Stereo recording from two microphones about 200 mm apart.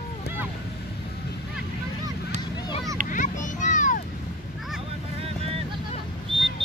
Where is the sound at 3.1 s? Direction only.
40° left (ahead or behind).